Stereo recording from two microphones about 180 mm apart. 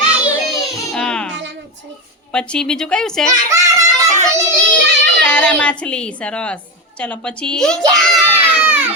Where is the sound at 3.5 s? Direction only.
15° right (ahead or behind).